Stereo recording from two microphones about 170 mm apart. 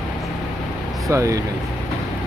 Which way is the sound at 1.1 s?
20° right (ahead or behind).